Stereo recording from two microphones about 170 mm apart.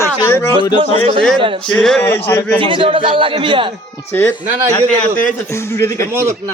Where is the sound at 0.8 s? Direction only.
30° right (ahead or behind).